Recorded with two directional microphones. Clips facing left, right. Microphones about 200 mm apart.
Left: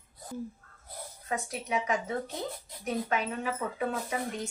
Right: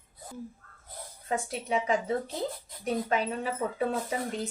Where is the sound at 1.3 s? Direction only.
30° right (ahead or behind).